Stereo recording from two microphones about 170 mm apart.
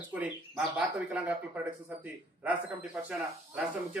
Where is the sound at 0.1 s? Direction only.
10° right (ahead or behind).